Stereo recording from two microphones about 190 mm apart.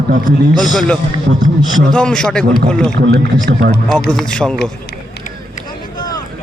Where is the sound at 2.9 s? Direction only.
55° right (ahead or behind).